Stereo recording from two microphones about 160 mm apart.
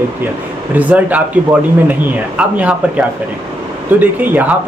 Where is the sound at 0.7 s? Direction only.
10° right (ahead or behind).